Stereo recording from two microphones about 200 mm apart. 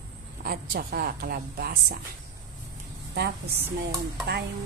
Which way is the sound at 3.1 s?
55° right (ahead or behind).